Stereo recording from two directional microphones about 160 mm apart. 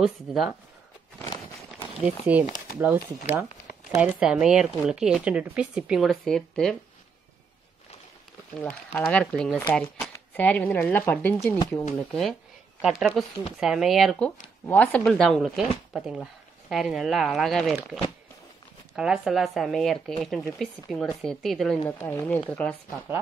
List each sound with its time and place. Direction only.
0.0 s speech: centre (ahead or behind)
1.2 s walk: 20° left (ahead or behind)
2.0 s speech: 10° right (ahead or behind)
3.9 s speech: 10° right (ahead or behind); by 6.8 s 5° left (ahead or behind)
8.6 s speech: 10° left (ahead or behind)
11.5 s speech: 25° left (ahead or behind)
12.0 s speech: 5° left (ahead or behind)
14.7 s speech: 10° left (ahead or behind)
18.9 s speech: 5° right (ahead or behind)
21.8 s speech: 10° left (ahead or behind)